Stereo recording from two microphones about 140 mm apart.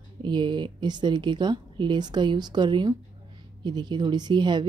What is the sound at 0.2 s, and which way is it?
A woman's voice, 35° right (ahead or behind).